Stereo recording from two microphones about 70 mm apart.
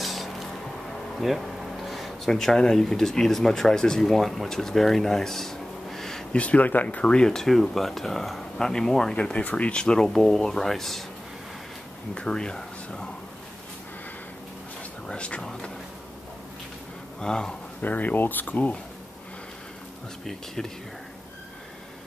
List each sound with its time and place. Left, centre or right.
0.0 s a sound: centre
1.1 s speech: centre
6.4 s speech: left; by 11.1 s centre
12.1 s speech: centre
15.0 s speech: centre
17.2 s speech: centre
17.8 s speech: left